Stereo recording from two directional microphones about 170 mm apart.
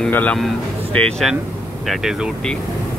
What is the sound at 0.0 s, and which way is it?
A man's voice, 10° left (ahead or behind).